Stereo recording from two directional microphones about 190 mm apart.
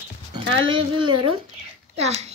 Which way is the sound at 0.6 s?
25° right (ahead or behind).